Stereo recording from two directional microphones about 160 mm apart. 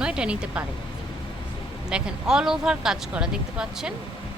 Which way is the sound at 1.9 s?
5° right (ahead or behind).